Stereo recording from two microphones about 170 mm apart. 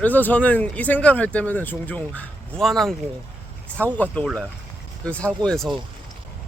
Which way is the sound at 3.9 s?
10° left (ahead or behind).